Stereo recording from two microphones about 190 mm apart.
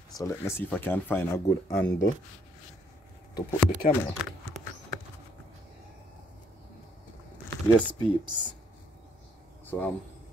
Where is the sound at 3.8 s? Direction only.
45° left (ahead or behind).